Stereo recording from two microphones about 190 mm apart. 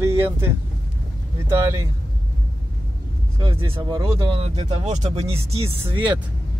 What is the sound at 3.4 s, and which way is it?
Speech, 25° right (ahead or behind).